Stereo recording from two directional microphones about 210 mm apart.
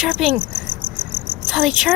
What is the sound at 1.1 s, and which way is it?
Cricket, centre (ahead or behind).